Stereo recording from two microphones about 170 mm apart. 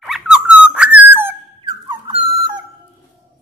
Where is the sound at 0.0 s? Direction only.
Centre (ahead or behind).